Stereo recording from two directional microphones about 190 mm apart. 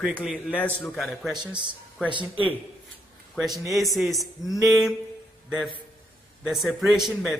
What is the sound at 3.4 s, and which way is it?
A man's voice, centre (ahead or behind).